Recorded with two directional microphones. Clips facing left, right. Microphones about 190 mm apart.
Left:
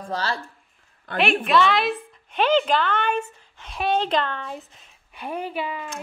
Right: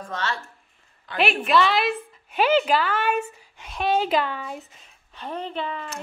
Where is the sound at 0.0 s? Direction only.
35° left (ahead or behind).